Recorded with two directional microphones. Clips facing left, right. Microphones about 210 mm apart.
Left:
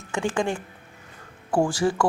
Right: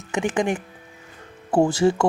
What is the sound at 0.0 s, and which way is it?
Speech, 20° right (ahead or behind).